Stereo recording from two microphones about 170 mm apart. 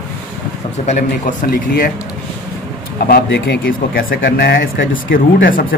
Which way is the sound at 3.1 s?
90° left.